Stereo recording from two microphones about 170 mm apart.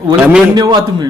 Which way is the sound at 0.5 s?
20° right (ahead or behind).